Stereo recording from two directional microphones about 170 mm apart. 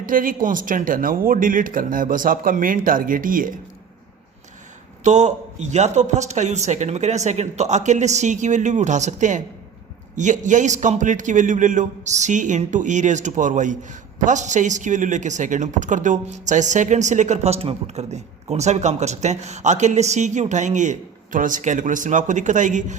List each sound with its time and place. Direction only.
0.0 s speech: 55° right (ahead or behind)
5.0 s speech: 45° right (ahead or behind)